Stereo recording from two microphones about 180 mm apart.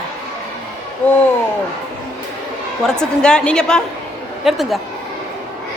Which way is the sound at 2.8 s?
5° left (ahead or behind).